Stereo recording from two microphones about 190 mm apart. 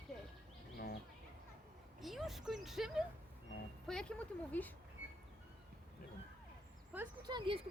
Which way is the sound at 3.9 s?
5° left (ahead or behind).